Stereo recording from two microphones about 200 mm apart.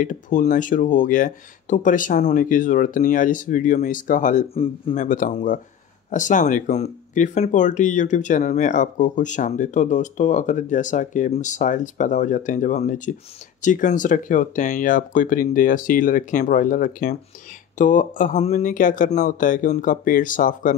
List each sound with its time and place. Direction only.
0.0 s speech: 40° left (ahead or behind)